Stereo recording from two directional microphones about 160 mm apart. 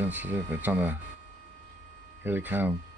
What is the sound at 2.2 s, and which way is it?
Speech, 10° right (ahead or behind).